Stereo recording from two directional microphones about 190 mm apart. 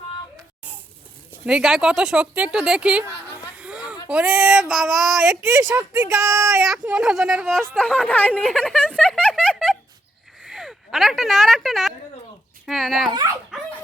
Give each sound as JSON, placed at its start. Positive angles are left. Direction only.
{"t": 1.3, "sound": "speech", "side_deg": -5}
{"t": 3.6, "sound": "a sound", "side_deg": -5}
{"t": 4.1, "sound": "speech", "side_deg": -5}
{"t": 5.3, "sound": "a woman's voice", "side_deg": -10}
{"t": 6.7, "sound": "speech", "side_deg": -5}
{"t": 10.4, "sound": "a sound", "side_deg": -5}
{"t": 12.6, "sound": "speech", "side_deg": 0}
{"t": 13.1, "sound": "speech", "side_deg": -20}